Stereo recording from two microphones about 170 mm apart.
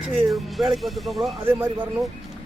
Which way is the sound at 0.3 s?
Centre (ahead or behind).